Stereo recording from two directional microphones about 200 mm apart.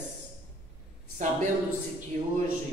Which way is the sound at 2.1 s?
40° right (ahead or behind).